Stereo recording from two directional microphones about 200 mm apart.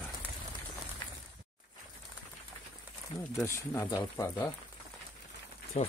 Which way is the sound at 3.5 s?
15° left (ahead or behind).